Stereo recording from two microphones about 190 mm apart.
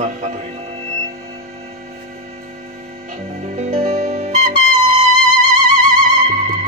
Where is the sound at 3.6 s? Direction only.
40° right (ahead or behind).